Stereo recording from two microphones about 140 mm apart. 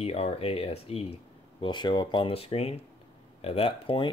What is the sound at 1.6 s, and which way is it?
Speech, 35° left (ahead or behind).